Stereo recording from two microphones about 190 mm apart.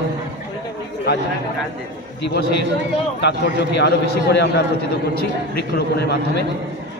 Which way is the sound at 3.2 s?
65° left (ahead or behind).